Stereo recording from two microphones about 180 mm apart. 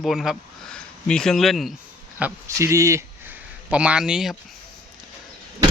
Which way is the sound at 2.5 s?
15° right (ahead or behind).